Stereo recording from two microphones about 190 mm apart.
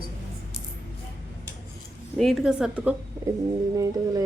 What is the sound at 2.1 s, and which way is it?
Speech, centre (ahead or behind).